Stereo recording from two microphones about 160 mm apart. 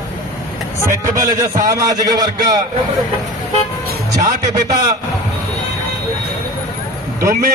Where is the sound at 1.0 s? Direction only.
55° right (ahead or behind).